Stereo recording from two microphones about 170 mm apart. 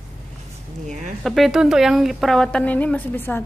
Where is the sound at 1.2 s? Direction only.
Centre (ahead or behind).